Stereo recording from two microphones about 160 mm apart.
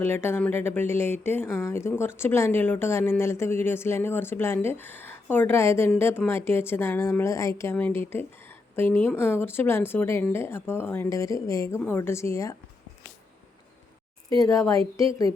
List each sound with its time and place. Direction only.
0.0 s speech: 15° left (ahead or behind)
14.3 s speech: 20° left (ahead or behind)